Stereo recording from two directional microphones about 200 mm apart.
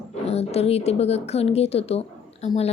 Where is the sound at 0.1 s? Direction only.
30° left (ahead or behind).